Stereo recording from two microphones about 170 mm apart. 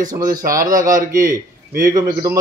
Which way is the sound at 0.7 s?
50° right (ahead or behind).